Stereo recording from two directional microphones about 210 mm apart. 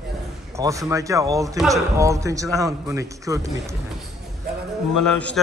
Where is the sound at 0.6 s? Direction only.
15° right (ahead or behind).